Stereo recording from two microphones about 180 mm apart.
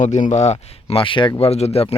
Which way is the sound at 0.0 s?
40° left (ahead or behind).